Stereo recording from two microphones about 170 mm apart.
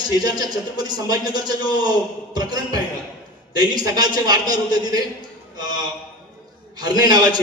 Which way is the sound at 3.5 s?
25° right (ahead or behind).